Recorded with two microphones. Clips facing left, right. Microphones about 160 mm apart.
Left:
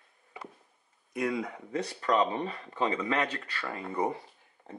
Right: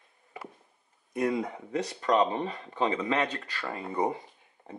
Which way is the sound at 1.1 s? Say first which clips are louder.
Right 3 dB; 30° right (ahead or behind).